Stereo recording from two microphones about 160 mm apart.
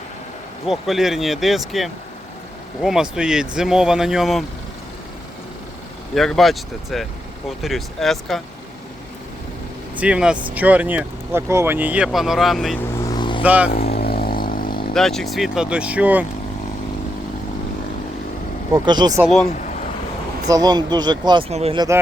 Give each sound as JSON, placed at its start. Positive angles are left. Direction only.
{"t": 0.6, "sound": "speech", "side_deg": 0}
{"t": 6.1, "sound": "speech", "side_deg": 0}
{"t": 9.9, "sound": "speech", "side_deg": -10}
{"t": 13.0, "sound": "vehicle", "side_deg": 25}
{"t": 13.4, "sound": "speech", "side_deg": -10}
{"t": 13.7, "sound": "vehicle", "side_deg": 75}
{"t": 14.9, "sound": "speech", "side_deg": 0}
{"t": 18.7, "sound": "speech", "side_deg": -25}
{"t": 20.5, "sound": "speech", "side_deg": -25}
{"t": 21.5, "sound": "speech", "side_deg": -40}
{"t": 21.8, "sound": "speech", "side_deg": -20}